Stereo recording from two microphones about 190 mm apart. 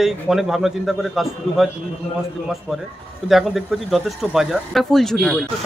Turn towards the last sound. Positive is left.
turn(degrees=0)  # may be behind; listen again after turning